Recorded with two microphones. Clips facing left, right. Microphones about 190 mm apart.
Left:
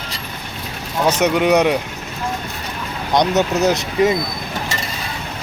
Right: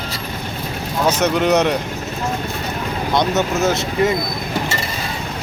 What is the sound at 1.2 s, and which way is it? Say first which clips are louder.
Speech: left 2 dB; 10° left (ahead or behind).